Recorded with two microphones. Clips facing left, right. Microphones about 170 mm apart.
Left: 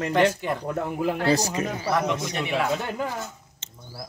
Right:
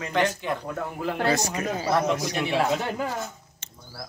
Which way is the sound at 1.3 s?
30° left (ahead or behind).